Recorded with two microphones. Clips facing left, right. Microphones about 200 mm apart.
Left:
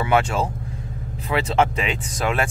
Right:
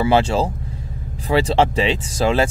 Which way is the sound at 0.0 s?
30° right (ahead or behind).